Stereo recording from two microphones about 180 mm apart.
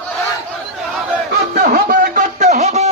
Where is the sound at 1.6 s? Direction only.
50° right (ahead or behind).